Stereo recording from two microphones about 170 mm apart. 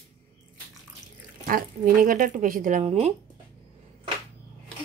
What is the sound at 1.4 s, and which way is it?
Speech, 55° right (ahead or behind).